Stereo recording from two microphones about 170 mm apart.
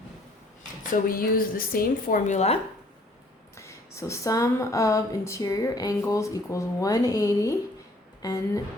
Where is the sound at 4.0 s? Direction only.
15° left (ahead or behind).